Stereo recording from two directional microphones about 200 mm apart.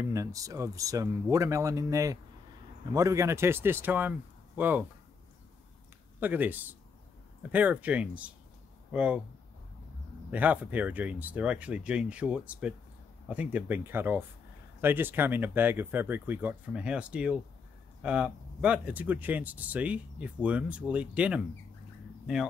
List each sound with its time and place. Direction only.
0.1 s speech: 15° right (ahead or behind)
6.1 s speech: 10° right (ahead or behind)
10.3 s speech: 10° right (ahead or behind)